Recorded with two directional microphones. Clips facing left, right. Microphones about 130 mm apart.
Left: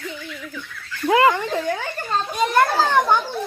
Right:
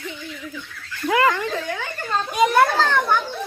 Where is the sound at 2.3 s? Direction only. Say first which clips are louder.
Right 2 dB; 5° right (ahead or behind).